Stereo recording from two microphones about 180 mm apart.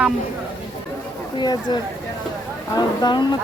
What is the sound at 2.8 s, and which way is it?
Speech, 25° left (ahead or behind).